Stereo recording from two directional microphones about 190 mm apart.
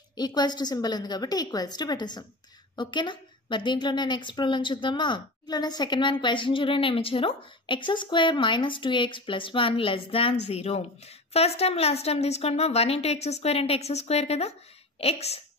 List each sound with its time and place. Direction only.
0.1 s a woman's voice: 20° left (ahead or behind)